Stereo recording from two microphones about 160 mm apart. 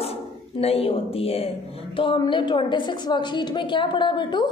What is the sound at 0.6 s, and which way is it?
A woman's voice, 40° left (ahead or behind).